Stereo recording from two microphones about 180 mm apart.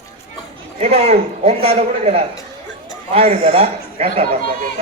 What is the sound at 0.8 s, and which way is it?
A man's voice, 35° right (ahead or behind).